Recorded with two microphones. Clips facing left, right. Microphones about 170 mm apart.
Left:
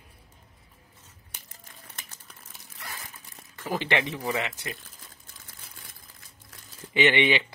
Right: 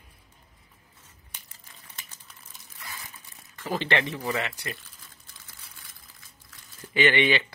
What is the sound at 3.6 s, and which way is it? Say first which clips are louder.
Speech: even; 15° left (ahead or behind).